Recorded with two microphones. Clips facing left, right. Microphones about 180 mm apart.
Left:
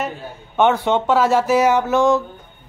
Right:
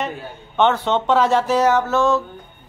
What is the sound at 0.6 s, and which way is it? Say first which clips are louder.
A man's voice: left 1 dB; 10° left (ahead or behind).